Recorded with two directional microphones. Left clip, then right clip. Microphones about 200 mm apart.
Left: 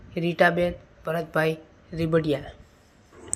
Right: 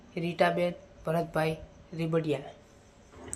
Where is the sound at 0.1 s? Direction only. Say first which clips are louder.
Left 6 dB; 10° left (ahead or behind).